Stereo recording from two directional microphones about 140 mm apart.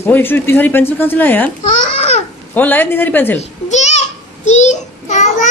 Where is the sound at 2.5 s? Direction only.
15° left (ahead or behind).